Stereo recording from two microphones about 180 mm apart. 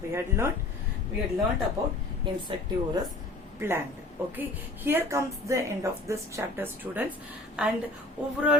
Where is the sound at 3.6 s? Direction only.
15° right (ahead or behind).